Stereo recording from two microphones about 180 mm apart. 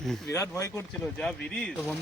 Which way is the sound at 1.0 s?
5° left (ahead or behind).